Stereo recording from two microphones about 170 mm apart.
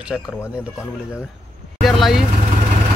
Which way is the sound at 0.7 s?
15° left (ahead or behind).